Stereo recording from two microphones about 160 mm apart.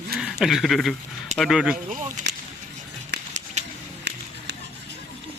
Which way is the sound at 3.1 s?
90° right.